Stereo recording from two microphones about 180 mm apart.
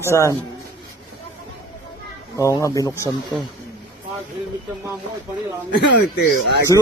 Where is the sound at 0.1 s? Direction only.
15° left (ahead or behind).